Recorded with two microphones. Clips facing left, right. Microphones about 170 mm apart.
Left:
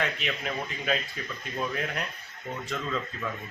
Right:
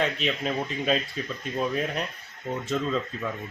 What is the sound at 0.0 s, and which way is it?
Speech, 20° right (ahead or behind).